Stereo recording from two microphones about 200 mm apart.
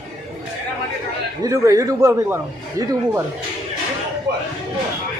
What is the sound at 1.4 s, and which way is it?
Speech, 15° right (ahead or behind).